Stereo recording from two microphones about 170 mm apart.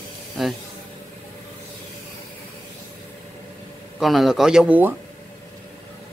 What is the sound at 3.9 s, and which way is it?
Speech, centre (ahead or behind).